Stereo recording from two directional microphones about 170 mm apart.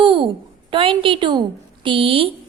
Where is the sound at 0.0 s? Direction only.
30° right (ahead or behind).